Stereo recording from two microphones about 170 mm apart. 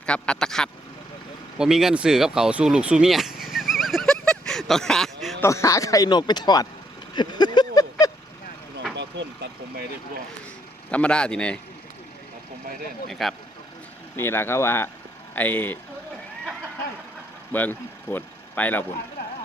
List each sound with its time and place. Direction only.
0.0 s speech: 5° left (ahead or behind)
3.4 s a sound: centre (ahead or behind)
5.4 s speech: 15° left (ahead or behind)
7.1 s a sound: 25° left (ahead or behind)
9.0 s vehicle: 90° right
10.9 s speech: 5° left (ahead or behind)
13.1 s speech: centre (ahead or behind)
14.2 s speech: 15° left (ahead or behind)
17.5 s speech: 10° left (ahead or behind)